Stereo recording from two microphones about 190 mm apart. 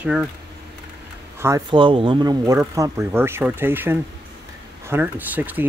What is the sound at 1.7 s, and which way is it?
Speech, 25° right (ahead or behind).